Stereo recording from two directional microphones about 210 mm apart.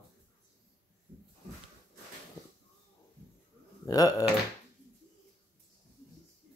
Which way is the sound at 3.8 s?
15° left (ahead or behind).